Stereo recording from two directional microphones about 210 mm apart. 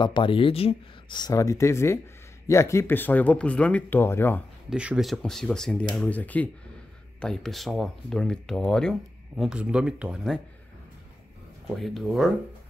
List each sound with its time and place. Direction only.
0.0 s speech: 25° left (ahead or behind)
4.6 s speech: 5° right (ahead or behind)
11.7 s speech: centre (ahead or behind)